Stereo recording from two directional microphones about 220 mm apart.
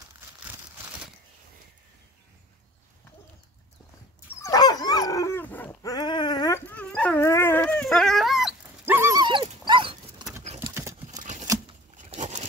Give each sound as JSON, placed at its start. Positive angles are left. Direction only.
{"t": 4.4, "sound": "dog", "side_deg": 15}
{"t": 10.6, "sound": "horse", "side_deg": -10}
{"t": 11.1, "sound": "scissors", "side_deg": -35}
{"t": 12.0, "sound": "a sound", "side_deg": -30}